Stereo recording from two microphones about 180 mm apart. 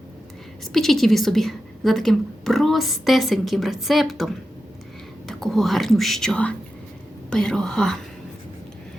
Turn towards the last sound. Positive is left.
turn(degrees=5)  # may be behind; listen again after turning